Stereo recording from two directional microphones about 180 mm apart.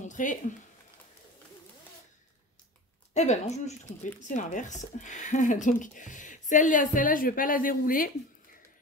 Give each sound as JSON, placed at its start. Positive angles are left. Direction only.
{"t": 0.0, "sound": "speech", "side_deg": 45}
{"t": 3.2, "sound": "speech", "side_deg": 40}